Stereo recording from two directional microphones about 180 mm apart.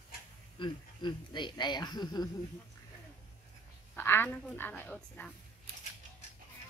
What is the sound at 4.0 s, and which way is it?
A woman's voice, 10° left (ahead or behind).